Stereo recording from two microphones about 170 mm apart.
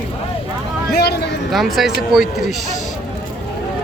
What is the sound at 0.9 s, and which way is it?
Speech, 70° left (ahead or behind).